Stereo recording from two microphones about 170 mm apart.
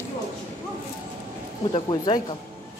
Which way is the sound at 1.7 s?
30° left (ahead or behind).